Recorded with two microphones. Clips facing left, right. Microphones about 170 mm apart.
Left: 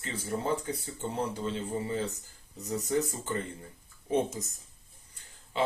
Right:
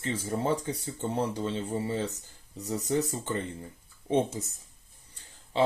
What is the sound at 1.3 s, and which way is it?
Speech, 35° right (ahead or behind).